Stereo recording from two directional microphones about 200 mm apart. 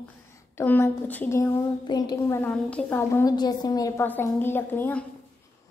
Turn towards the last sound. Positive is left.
turn(degrees=10)  # may be behind; listen again after turning